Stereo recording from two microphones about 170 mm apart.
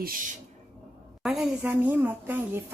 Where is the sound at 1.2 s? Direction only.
5° right (ahead or behind).